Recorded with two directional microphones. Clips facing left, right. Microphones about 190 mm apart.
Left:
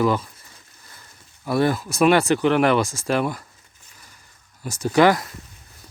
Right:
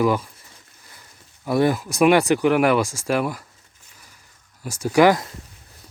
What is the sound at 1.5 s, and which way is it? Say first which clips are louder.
Speech: right 1 dB; 15° right (ahead or behind).